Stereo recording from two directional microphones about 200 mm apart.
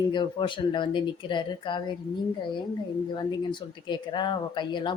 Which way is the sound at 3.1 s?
20° left (ahead or behind).